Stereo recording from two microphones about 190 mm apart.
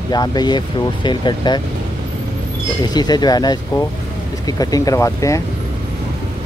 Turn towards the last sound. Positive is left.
turn(degrees=15)  # may be behind; listen again after turning